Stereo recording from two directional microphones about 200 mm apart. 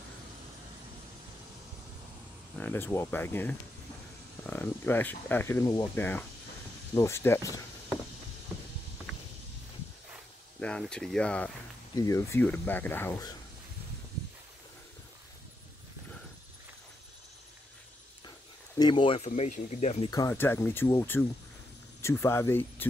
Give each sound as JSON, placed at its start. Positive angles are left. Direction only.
{"t": 2.5, "sound": "speech", "side_deg": 10}
{"t": 10.6, "sound": "speech", "side_deg": 5}
{"t": 11.9, "sound": "speech", "side_deg": 15}
{"t": 18.8, "sound": "speech", "side_deg": 25}
{"t": 20.1, "sound": "speech", "side_deg": 15}